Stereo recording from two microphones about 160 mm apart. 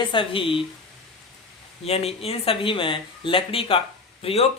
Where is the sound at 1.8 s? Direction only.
40° left (ahead or behind).